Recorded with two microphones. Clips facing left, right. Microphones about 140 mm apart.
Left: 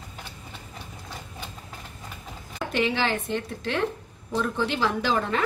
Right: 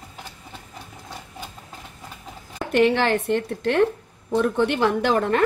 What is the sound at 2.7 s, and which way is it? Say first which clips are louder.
A woman's voice: right 7 dB; 60° right (ahead or behind).